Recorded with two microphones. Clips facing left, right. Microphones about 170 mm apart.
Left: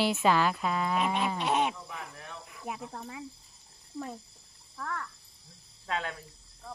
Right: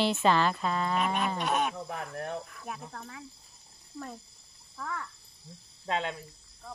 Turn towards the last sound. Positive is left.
turn(degrees=-30)  # may be behind; listen again after turning